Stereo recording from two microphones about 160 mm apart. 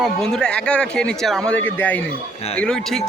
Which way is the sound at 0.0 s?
5° left (ahead or behind).